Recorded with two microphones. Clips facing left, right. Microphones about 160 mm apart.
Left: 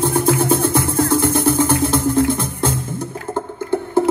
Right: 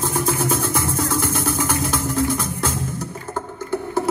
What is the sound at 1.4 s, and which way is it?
Music, 25° left (ahead or behind).